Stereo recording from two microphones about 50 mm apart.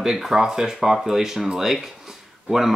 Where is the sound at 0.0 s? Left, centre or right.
Centre.